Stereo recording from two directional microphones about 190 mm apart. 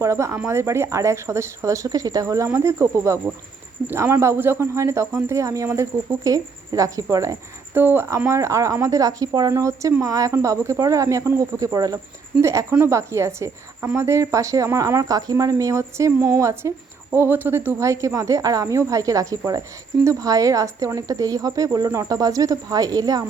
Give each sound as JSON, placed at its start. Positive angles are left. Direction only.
{"t": 0.0, "sound": "speech", "side_deg": -15}